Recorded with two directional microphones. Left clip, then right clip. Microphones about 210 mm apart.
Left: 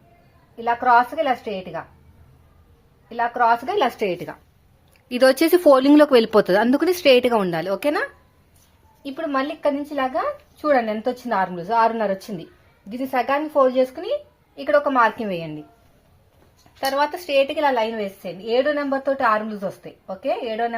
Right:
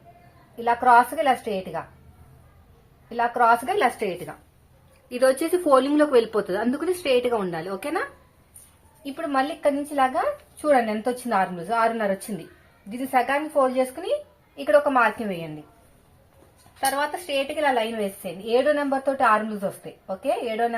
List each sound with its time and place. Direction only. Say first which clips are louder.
0.6 s a woman's voice: even; 15° left (ahead or behind)
3.1 s a woman's voice: left 1 dB; 15° left (ahead or behind)
3.8 s a woman's voice: left 2 dB; 35° left (ahead or behind); by 8.0 s 50° left (ahead or behind)
9.1 s a woman's voice: left 1 dB; 25° left (ahead or behind)
15.0 s a woman's voice: left 3 dB; 40° left (ahead or behind)
16.8 s a woman's voice: left 3 dB; 45° left (ahead or behind); by 20.7 s 20° left (ahead or behind)